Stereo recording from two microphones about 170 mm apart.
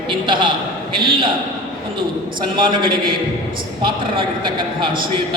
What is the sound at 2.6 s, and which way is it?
A man's voice, 30° right (ahead or behind).